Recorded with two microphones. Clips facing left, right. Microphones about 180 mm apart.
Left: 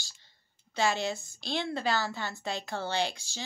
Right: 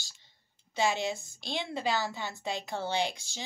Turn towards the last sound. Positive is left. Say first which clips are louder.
# even
turn(degrees=-20)  # may be behind; listen again after turning